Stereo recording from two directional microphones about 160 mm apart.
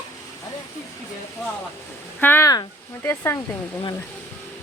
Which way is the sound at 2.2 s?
15° left (ahead or behind).